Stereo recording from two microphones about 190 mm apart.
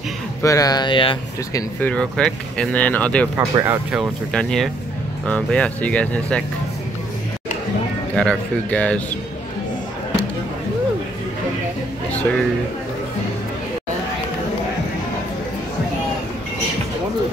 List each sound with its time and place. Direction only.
0.4 s speech: 15° left (ahead or behind)
1.8 s speech: 5° left (ahead or behind)
3.3 s speech: 10° right (ahead or behind)
4.0 s speech: 5° left (ahead or behind)
8.2 s speech: 5° left (ahead or behind)
12.1 s a sound: 5° left (ahead or behind)